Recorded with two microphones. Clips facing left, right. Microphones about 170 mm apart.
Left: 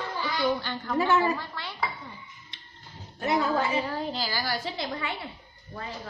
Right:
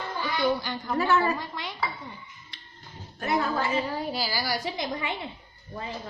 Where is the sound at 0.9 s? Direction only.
15° left (ahead or behind).